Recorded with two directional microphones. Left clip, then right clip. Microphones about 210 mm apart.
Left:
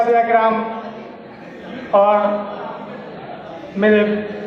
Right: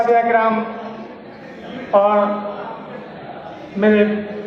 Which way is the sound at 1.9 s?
15° right (ahead or behind).